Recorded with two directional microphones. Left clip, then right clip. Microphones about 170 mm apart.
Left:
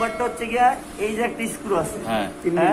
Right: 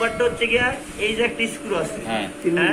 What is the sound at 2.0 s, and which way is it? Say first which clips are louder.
Speech: left 1 dB; 35° left (ahead or behind).